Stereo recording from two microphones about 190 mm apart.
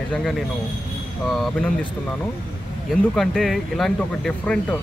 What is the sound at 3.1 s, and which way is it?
Speech, centre (ahead or behind).